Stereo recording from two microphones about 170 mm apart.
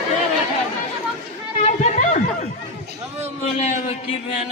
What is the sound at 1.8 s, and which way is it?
Snicker, 45° left (ahead or behind).